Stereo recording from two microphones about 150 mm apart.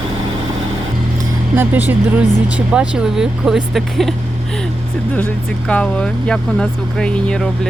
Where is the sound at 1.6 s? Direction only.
10° right (ahead or behind).